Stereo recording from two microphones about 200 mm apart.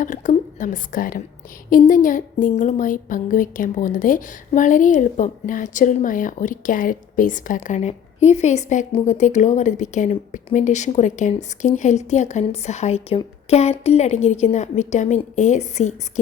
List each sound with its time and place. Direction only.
0.0 s a woman's voice: 40° left (ahead or behind)